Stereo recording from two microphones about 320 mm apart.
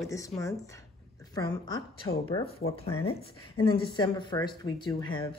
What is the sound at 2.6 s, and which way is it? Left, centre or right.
Speech, left.